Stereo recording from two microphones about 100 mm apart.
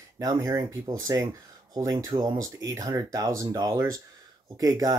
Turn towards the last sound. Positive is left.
turn(degrees=-40)  # may be behind; listen again after turning